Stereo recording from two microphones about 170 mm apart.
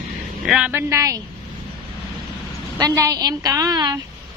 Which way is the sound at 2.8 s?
20° right (ahead or behind).